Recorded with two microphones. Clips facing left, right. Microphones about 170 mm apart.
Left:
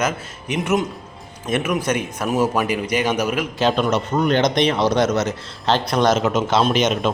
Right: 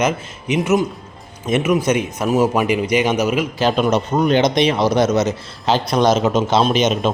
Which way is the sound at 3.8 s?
20° right (ahead or behind).